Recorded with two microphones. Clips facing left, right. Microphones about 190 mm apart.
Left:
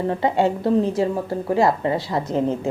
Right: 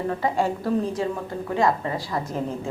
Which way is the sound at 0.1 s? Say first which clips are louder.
Left 5 dB; 25° left (ahead or behind).